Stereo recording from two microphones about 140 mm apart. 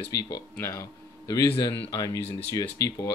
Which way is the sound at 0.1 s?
25° left (ahead or behind).